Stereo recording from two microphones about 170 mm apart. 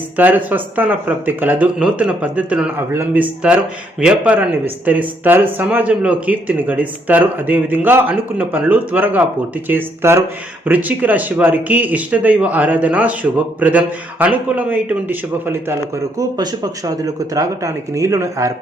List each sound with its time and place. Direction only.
0.2 s speech: 10° right (ahead or behind)